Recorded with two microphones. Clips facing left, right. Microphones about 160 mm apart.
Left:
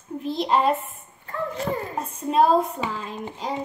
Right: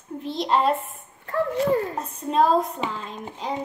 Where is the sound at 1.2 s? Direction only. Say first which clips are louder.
Right 5 dB; 55° right (ahead or behind).